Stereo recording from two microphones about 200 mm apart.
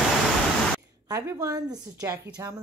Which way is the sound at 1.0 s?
15° right (ahead or behind).